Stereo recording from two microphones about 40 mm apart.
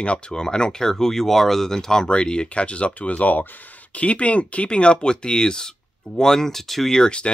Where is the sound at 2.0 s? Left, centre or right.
Left; by 7.0 s centre.